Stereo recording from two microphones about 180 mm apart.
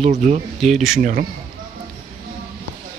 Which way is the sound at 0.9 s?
50° right (ahead or behind).